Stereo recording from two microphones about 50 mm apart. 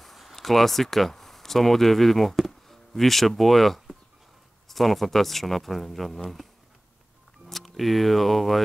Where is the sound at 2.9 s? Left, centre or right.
Centre.